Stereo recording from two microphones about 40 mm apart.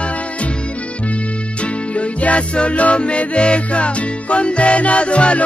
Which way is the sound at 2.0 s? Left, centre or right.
Left.